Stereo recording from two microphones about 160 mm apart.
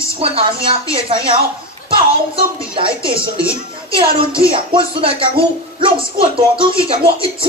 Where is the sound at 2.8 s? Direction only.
35° right (ahead or behind).